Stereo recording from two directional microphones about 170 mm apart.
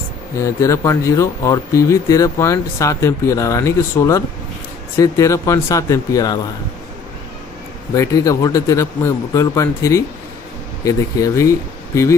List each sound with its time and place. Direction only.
0.4 s a man's voice: 20° left (ahead or behind)
7.9 s a man's voice: 20° left (ahead or behind)